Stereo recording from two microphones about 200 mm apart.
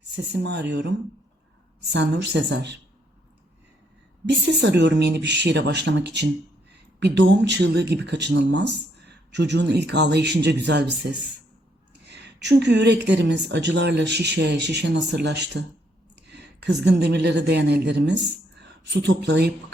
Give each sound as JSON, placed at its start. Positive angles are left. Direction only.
{"t": 0.3, "sound": "speech", "side_deg": -60}
{"t": 4.4, "sound": "a woman's voice", "side_deg": -60}